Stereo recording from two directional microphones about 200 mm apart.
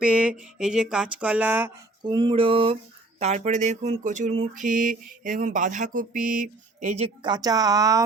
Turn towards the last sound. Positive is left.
turn(degrees=-20)  # may be behind; listen again after turning